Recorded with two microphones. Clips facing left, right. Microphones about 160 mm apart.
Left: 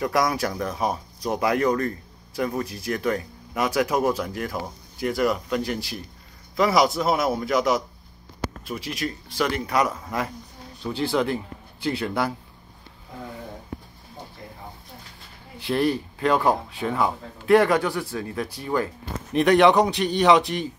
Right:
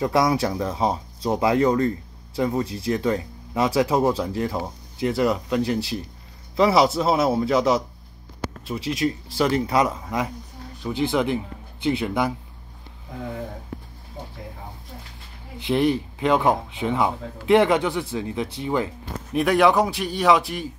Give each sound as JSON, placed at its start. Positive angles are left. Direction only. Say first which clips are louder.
{"t": 0.0, "sound": "speech", "louder": "right 3 dB", "side_deg": -25}
{"t": 15.6, "sound": "speech", "louder": "right 2 dB", "side_deg": -20}
{"t": 19.3, "sound": "a man's voice", "louder": "left 1 dB", "side_deg": -5}